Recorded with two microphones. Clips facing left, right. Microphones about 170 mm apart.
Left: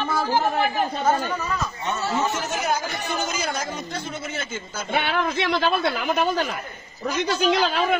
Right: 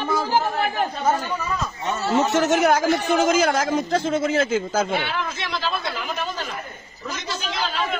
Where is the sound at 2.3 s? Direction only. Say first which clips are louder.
Right 8 dB; 75° right (ahead or behind); by 4.9 s 90° right.